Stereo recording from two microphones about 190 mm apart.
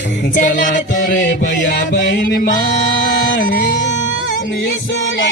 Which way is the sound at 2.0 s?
65° left (ahead or behind).